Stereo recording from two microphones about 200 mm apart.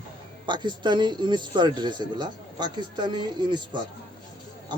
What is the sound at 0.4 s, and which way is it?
A man's voice, 25° right (ahead or behind).